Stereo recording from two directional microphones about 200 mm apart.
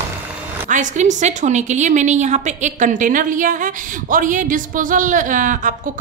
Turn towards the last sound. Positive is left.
turn(degrees=-40)  # may be behind; listen again after turning